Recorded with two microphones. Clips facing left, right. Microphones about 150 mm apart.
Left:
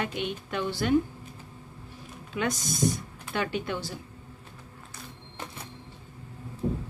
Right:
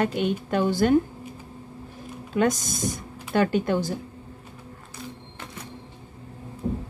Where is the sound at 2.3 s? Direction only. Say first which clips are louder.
Right 7 dB; 45° right (ahead or behind).